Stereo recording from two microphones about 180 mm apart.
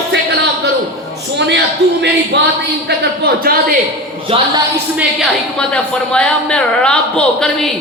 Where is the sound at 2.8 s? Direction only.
60° right (ahead or behind).